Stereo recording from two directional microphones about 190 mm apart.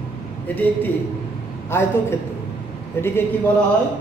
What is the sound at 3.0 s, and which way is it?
Speech, 10° left (ahead or behind).